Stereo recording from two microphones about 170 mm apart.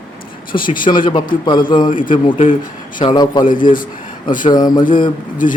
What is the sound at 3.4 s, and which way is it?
Speech, 55° left (ahead or behind).